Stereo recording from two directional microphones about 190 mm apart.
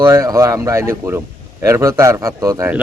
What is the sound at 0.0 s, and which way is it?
Speech, 15° right (ahead or behind).